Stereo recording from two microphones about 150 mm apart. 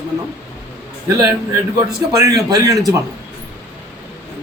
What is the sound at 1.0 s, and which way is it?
A man's voice, 25° right (ahead or behind).